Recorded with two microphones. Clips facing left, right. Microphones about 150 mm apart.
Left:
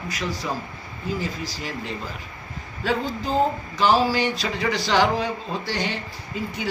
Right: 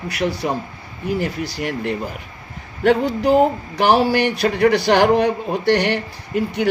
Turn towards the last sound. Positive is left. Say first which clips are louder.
# right 9 dB
turn(degrees=-70)  # may be behind; listen again after turning